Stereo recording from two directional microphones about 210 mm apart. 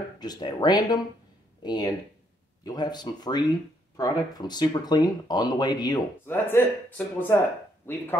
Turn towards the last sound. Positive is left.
turn(degrees=10)  # may be behind; listen again after turning